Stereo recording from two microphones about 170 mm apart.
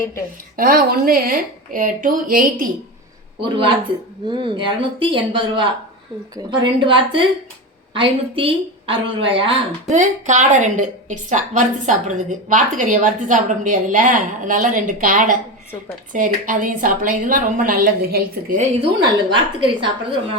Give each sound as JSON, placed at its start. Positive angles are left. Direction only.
{"t": 0.5, "sound": "speech", "side_deg": -60}
{"t": 3.4, "sound": "a woman's voice", "side_deg": -30}
{"t": 9.9, "sound": "a woman's voice", "side_deg": -45}
{"t": 19.3, "sound": "speech", "side_deg": -30}